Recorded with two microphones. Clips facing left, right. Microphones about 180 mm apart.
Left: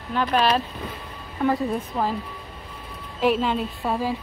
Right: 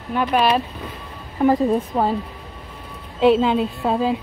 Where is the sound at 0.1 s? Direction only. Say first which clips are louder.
Right 3 dB; 10° right (ahead or behind).